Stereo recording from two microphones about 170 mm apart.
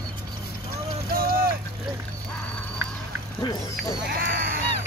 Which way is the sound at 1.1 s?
60° right (ahead or behind).